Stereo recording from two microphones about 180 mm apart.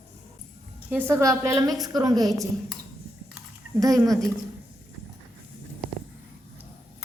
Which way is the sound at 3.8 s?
20° right (ahead or behind).